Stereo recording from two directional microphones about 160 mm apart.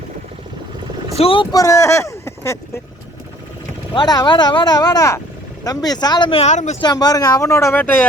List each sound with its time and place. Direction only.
1.1 s speech: 35° left (ahead or behind)
1.5 s speech: 20° left (ahead or behind)
3.9 s speech: 25° left (ahead or behind)
6.4 s speech: 45° left (ahead or behind)
6.8 s speech: 25° left (ahead or behind)